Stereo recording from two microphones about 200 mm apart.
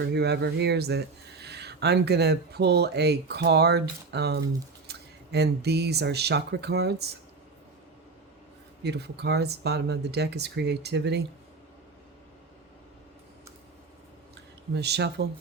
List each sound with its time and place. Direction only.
0.0 s speech: 55° right (ahead or behind)
8.8 s speech: 55° right (ahead or behind)
14.8 s speech: 55° right (ahead or behind)